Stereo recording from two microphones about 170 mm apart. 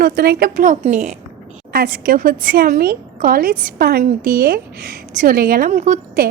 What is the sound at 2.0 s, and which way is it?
A woman's voice, 60° right (ahead or behind).